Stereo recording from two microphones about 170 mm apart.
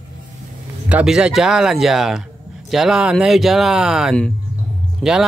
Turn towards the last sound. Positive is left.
turn(degrees=-5)  # may be behind; listen again after turning